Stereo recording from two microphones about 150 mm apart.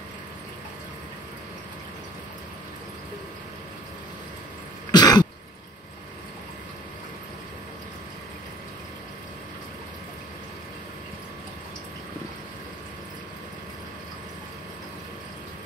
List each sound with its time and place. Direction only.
4.9 s throat clearing: 25° left (ahead or behind)